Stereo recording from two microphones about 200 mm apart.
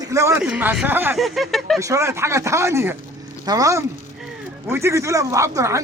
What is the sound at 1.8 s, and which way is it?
A man's voice, 15° right (ahead or behind).